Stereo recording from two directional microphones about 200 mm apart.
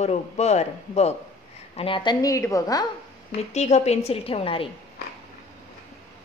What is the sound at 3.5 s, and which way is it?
A woman's voice, 35° left (ahead or behind).